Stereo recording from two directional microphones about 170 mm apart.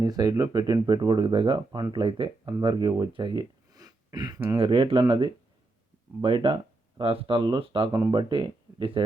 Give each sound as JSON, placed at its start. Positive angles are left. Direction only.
{"t": 0.0, "sound": "speech", "side_deg": -20}
{"t": 7.9, "sound": "speech", "side_deg": -20}
{"t": 8.3, "sound": "speech", "side_deg": -30}